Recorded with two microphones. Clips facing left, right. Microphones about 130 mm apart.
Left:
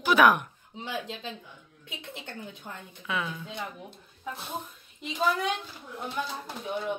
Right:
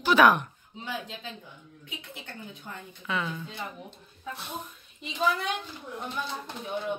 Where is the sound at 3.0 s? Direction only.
5° left (ahead or behind).